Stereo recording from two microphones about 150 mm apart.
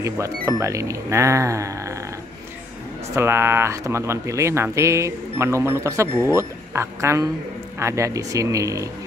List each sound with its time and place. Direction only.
0.0 s speech: 20° right (ahead or behind)
3.2 s speech: 15° right (ahead or behind)